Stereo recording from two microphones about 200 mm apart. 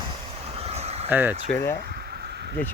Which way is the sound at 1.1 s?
10° right (ahead or behind).